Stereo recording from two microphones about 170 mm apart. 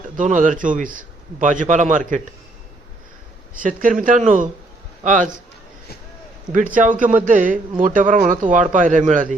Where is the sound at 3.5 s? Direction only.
50° right (ahead or behind).